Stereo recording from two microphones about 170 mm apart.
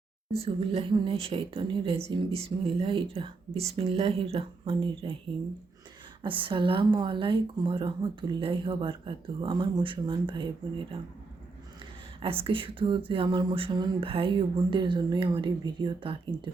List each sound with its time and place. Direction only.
0.3 s speech: 35° right (ahead or behind)
6.2 s speech: 30° right (ahead or behind)
12.2 s speech: 30° right (ahead or behind)